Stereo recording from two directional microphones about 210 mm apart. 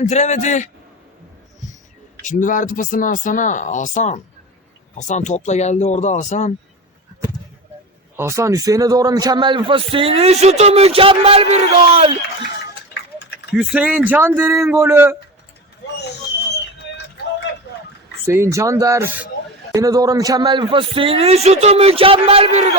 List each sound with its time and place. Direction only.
0.0 s speech: 35° left (ahead or behind)
2.2 s speech: 40° left (ahead or behind)
8.1 s a man's voice: 15° right (ahead or behind); by 12.1 s 30° right (ahead or behind)
13.5 s speech: 5° right (ahead or behind)
18.3 s a man's voice: 15° right (ahead or behind); by 22.7 s 30° right (ahead or behind)